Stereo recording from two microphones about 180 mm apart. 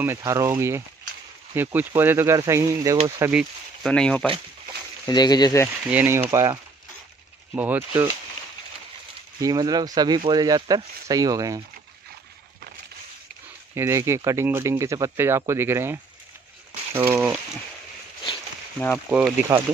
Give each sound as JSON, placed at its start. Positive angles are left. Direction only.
{"t": 0.0, "sound": "speech", "side_deg": -15}
{"t": 3.2, "sound": "speech", "side_deg": -5}
{"t": 5.0, "sound": "speech", "side_deg": 20}
{"t": 5.9, "sound": "speech", "side_deg": -10}
{"t": 9.4, "sound": "speech", "side_deg": -20}
{"t": 13.7, "sound": "speech", "side_deg": -15}
{"t": 19.0, "sound": "speech", "side_deg": -10}